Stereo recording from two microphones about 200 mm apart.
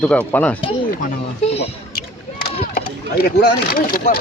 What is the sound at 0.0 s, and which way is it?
Speech, 5° left (ahead or behind).